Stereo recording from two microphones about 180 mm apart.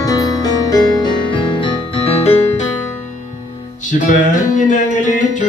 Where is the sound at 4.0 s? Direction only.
45° left (ahead or behind).